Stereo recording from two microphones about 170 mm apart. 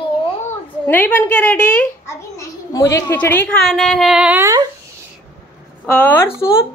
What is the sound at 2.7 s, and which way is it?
A woman's voice, 20° left (ahead or behind).